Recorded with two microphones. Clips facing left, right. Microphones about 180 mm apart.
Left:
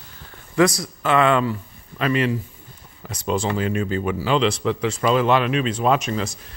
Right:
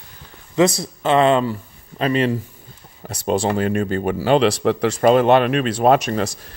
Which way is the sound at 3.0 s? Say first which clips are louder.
Right 4 dB; 45° right (ahead or behind).